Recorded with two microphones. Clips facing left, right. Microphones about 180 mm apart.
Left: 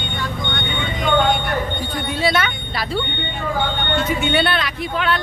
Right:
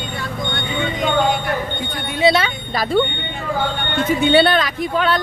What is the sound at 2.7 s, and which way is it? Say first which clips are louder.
Speech: right 9 dB; 45° right (ahead or behind).